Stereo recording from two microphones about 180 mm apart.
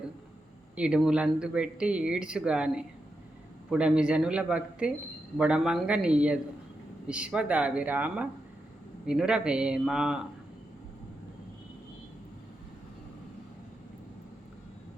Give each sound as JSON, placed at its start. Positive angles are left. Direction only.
{"t": 0.8, "sound": "speech", "side_deg": -5}